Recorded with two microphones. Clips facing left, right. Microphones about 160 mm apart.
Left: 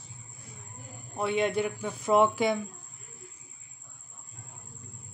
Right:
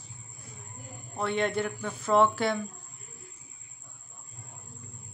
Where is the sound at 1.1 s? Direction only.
5° left (ahead or behind).